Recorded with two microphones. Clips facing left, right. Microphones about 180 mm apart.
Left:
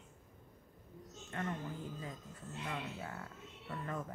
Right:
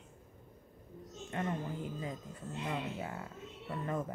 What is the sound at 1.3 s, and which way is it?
Speech, 20° right (ahead or behind).